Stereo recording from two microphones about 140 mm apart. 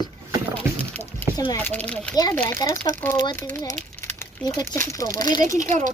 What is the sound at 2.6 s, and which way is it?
Speech, 25° left (ahead or behind).